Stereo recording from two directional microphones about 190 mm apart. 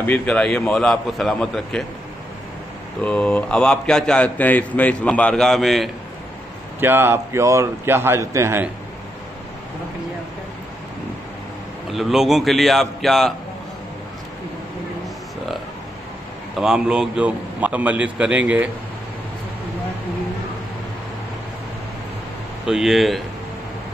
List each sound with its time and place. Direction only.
0.0 s a man's voice: 10° left (ahead or behind)
3.0 s a man's voice: 5° left (ahead or behind)
6.8 s a man's voice: 10° right (ahead or behind)
11.9 s a man's voice: centre (ahead or behind)
16.5 s a man's voice: 5° right (ahead or behind)
22.7 s a man's voice: centre (ahead or behind)